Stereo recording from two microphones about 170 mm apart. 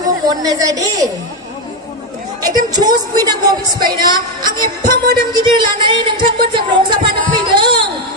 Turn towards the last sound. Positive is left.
turn(degrees=-30)  # may be behind; listen again after turning